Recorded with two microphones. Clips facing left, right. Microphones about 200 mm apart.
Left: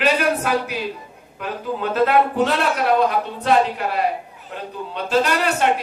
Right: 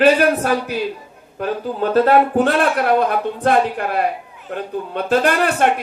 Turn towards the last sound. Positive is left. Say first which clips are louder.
# right 3 dB
turn(degrees=-55)  # may be behind; listen again after turning